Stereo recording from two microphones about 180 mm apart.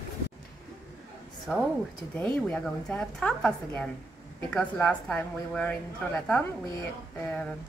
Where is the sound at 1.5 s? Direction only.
5° left (ahead or behind).